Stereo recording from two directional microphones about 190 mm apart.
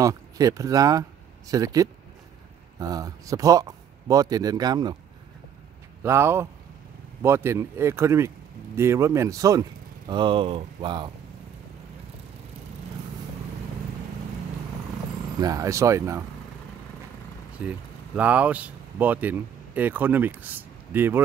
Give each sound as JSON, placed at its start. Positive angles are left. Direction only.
{"t": 0.0, "sound": "speech", "side_deg": -15}
{"t": 6.0, "sound": "speech", "side_deg": -15}
{"t": 15.4, "sound": "speech", "side_deg": -15}
{"t": 17.6, "sound": "speech", "side_deg": -5}